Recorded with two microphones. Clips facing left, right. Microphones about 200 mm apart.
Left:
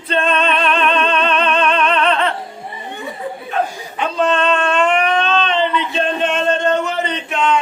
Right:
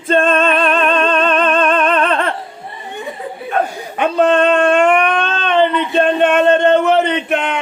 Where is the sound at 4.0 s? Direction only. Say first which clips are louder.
Right 5 dB; 55° right (ahead or behind).